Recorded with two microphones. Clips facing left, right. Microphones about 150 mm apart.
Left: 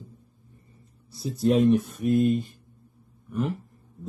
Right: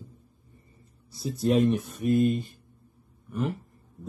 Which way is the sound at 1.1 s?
Centre (ahead or behind).